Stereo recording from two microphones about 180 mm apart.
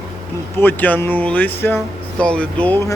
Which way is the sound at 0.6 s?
10° left (ahead or behind).